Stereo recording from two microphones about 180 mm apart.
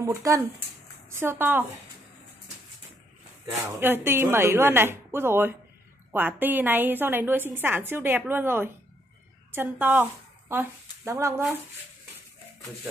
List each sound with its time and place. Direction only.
0.0 s a woman's voice: 20° right (ahead or behind)
3.8 s a woman's voice: 10° right (ahead or behind)